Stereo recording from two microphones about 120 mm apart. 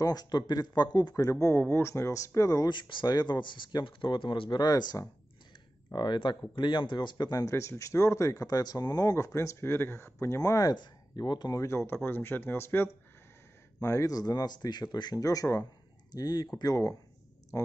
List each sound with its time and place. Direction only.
0.0 s speech: 35° left (ahead or behind)
5.9 s speech: 40° left (ahead or behind)